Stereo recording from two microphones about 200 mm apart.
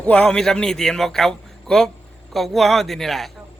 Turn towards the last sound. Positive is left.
turn(degrees=0)  # may be behind; listen again after turning